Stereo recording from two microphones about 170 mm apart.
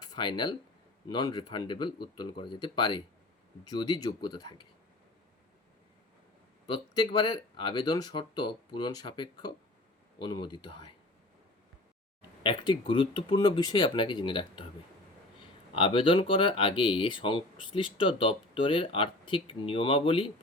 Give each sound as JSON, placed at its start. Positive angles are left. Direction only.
{"t": 0.0, "sound": "speech", "side_deg": 25}
{"t": 6.7, "sound": "speech", "side_deg": 25}
{"t": 12.4, "sound": "speech", "side_deg": 30}
{"t": 15.7, "sound": "speech", "side_deg": 30}